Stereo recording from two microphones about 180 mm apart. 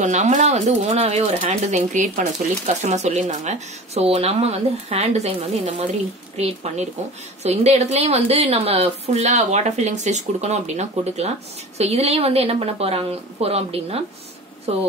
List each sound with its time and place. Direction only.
0.0 s speech: 45° right (ahead or behind)